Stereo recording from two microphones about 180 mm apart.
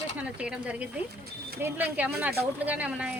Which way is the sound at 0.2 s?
5° right (ahead or behind).